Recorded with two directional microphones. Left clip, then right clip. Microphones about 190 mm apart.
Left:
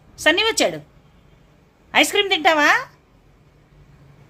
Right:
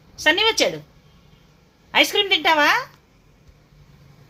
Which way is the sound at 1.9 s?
15° left (ahead or behind).